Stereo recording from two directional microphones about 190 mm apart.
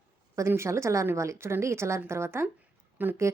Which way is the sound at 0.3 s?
15° right (ahead or behind).